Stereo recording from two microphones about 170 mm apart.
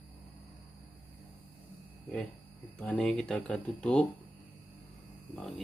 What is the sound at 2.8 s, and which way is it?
Speech, 5° left (ahead or behind).